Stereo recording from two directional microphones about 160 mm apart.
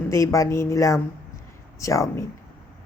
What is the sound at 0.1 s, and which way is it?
Speech, 20° left (ahead or behind).